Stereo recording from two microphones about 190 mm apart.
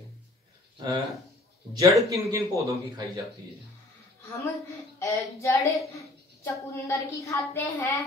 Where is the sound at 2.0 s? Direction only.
15° right (ahead or behind).